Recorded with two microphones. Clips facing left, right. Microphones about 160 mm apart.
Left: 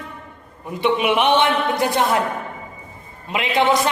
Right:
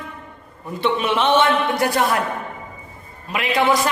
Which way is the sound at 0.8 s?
15° left (ahead or behind).